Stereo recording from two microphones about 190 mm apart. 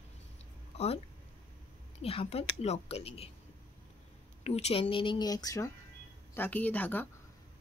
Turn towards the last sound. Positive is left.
turn(degrees=10)  # may be behind; listen again after turning